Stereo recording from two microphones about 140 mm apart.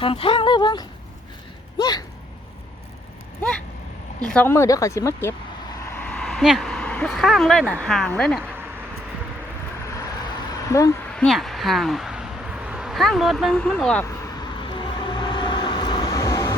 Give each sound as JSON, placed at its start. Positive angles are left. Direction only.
{"t": 0.0, "sound": "speech", "side_deg": 40}
{"t": 4.2, "sound": "speech", "side_deg": 5}
{"t": 4.4, "sound": "speech", "side_deg": 20}
{"t": 5.9, "sound": "speech", "side_deg": 10}
{"t": 10.7, "sound": "speech", "side_deg": 20}
{"t": 11.1, "sound": "speech", "side_deg": 5}
{"t": 14.4, "sound": "vehicle", "side_deg": 35}